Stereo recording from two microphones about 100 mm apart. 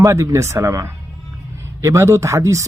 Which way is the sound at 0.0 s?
30° right (ahead or behind).